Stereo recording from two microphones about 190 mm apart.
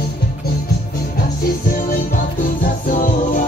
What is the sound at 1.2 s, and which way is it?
Music, 45° left (ahead or behind).